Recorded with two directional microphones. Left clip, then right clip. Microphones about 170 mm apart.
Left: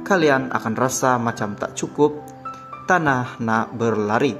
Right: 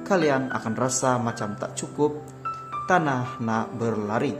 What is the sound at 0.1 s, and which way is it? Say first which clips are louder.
Speech: left 5 dB; 25° left (ahead or behind).